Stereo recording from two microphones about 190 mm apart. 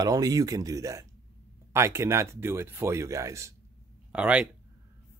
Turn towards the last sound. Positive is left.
turn(degrees=-5)  # may be behind; listen again after turning